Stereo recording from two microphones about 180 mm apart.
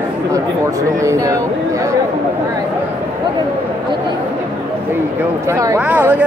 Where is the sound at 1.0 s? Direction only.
15° right (ahead or behind).